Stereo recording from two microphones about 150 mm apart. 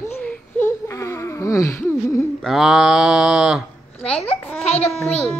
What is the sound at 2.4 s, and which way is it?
Speech, centre (ahead or behind).